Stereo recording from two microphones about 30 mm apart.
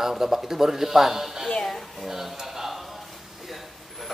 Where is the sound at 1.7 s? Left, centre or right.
Centre.